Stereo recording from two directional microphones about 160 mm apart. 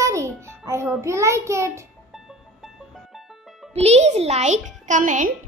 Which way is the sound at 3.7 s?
40° right (ahead or behind).